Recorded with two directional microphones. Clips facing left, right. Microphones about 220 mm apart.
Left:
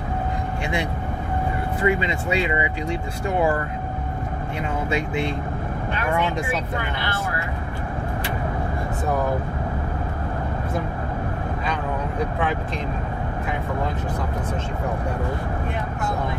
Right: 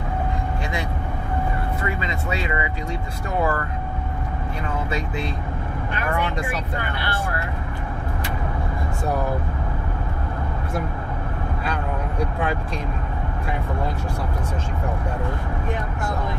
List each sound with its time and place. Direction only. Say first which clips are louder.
1.8 s speech: left 6 dB; 25° left (ahead or behind)